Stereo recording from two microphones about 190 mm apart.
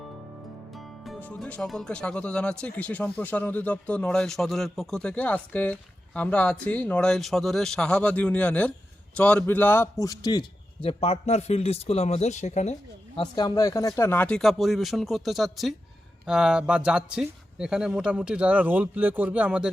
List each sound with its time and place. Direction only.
0.7 s a man's voice: centre (ahead or behind); by 12.7 s 35° left (ahead or behind)
13.1 s speech: 25° left (ahead or behind); by 19.7 s 5° right (ahead or behind)